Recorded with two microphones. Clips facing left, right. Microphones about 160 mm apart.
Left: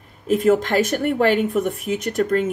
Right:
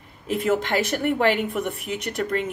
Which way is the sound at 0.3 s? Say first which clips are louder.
Left 5 dB; 40° left (ahead or behind).